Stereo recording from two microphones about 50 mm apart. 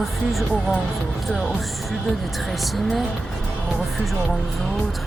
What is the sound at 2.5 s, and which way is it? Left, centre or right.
Speech, centre.